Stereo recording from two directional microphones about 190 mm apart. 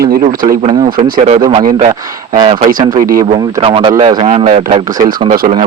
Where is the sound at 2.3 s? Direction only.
25° right (ahead or behind).